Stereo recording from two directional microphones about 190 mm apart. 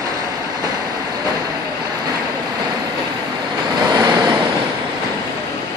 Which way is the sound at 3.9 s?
20° right (ahead or behind).